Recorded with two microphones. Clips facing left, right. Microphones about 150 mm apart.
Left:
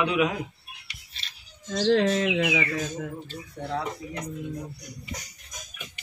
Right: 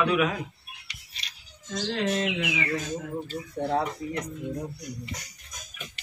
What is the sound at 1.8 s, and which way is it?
Speech, 85° left.